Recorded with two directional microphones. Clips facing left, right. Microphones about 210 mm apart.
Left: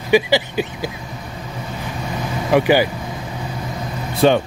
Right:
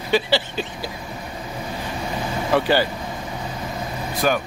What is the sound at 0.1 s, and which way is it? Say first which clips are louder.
Speech: left 5 dB; 15° left (ahead or behind).